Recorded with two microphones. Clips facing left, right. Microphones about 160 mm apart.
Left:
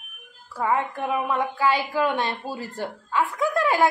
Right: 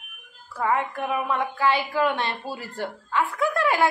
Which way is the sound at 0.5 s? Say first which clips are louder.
Even; 15° left (ahead or behind).